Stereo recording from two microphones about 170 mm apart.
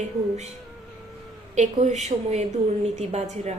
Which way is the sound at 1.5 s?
45° right (ahead or behind).